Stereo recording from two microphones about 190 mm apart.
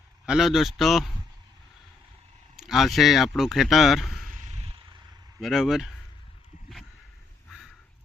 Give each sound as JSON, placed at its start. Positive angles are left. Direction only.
{"t": 0.3, "sound": "a man's voice", "side_deg": 0}
{"t": 2.6, "sound": "speech", "side_deg": 0}
{"t": 4.3, "sound": "a sound", "side_deg": -40}
{"t": 5.4, "sound": "a man's voice", "side_deg": 0}